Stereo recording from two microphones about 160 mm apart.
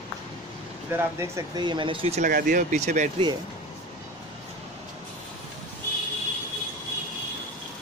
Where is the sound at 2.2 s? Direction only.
60° right (ahead or behind).